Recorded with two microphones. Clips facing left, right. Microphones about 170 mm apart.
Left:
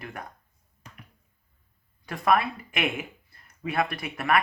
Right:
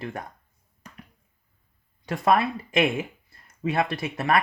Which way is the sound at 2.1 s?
25° right (ahead or behind).